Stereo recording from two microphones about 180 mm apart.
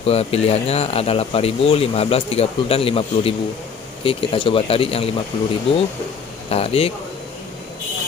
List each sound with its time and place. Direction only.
0.0 s speech: 35° left (ahead or behind)
6.5 s speech: 35° left (ahead or behind)